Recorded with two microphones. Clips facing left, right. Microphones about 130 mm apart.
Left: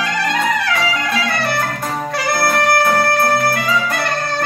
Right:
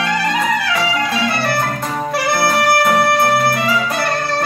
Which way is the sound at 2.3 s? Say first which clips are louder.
Even; 5° right (ahead or behind).